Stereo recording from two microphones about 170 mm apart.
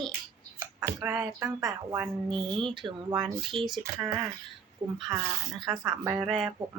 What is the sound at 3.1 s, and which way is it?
Speech, 25° right (ahead or behind).